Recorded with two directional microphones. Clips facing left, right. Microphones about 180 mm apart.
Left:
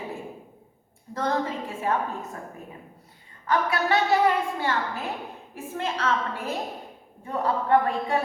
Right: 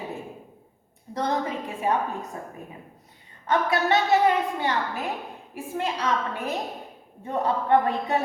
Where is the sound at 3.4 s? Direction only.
20° right (ahead or behind).